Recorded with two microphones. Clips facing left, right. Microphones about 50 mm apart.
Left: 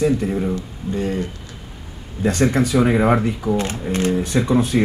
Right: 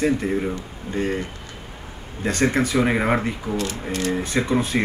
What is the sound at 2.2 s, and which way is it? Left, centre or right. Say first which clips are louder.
Speech: left 3 dB; right.